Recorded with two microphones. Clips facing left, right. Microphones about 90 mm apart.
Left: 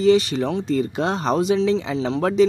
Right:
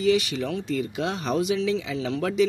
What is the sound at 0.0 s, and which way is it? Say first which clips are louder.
Speech: left 6 dB; 35° left (ahead or behind).